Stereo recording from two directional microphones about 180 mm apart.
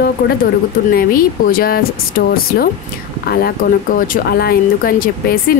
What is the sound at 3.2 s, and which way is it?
Speech, 55° left (ahead or behind).